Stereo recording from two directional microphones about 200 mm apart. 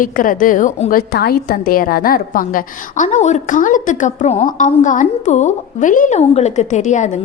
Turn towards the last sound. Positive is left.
turn(degrees=35)  # may be behind; listen again after turning